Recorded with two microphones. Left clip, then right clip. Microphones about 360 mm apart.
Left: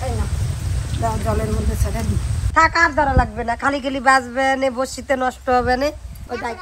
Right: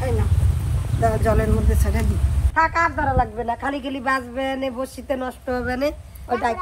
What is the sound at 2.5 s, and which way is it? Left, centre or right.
A man's voice, centre.